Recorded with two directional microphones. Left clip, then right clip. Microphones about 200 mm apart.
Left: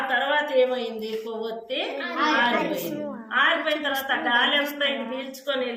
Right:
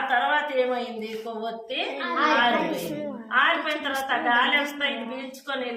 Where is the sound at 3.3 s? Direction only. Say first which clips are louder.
Even; 20° right (ahead or behind).